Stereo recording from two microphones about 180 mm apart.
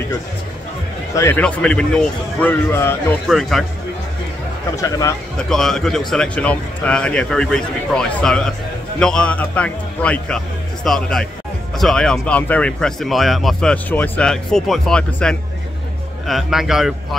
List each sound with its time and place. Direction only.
1.1 s a man's voice: 15° left (ahead or behind)
1.4 s speech: 5° left (ahead or behind)
3.3 s speech: centre (ahead or behind)
4.7 s speech: 20° left (ahead or behind)
5.5 s speech: centre (ahead or behind)